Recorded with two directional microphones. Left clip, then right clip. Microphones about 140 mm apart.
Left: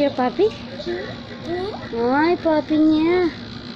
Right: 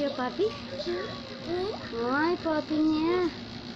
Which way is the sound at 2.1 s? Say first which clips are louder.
Left 9 dB; 20° left (ahead or behind).